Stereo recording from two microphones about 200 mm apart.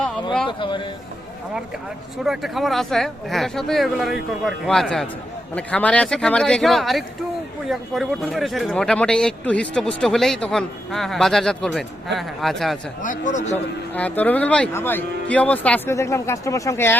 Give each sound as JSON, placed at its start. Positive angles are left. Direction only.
{"t": 0.4, "sound": "speech", "side_deg": 25}
{"t": 2.2, "sound": "speech", "side_deg": 0}
{"t": 13.0, "sound": "a man's voice", "side_deg": 40}
{"t": 13.9, "sound": "speech", "side_deg": 10}